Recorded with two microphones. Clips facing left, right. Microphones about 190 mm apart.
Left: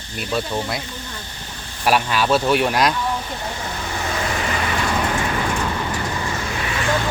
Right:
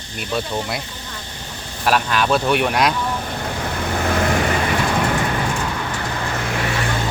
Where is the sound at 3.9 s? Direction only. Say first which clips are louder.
Right 6 dB; 60° right (ahead or behind).